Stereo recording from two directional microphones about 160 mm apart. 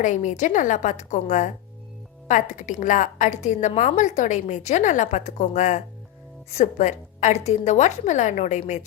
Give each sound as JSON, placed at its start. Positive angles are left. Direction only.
{"t": 0.0, "sound": "a woman's voice", "side_deg": 50}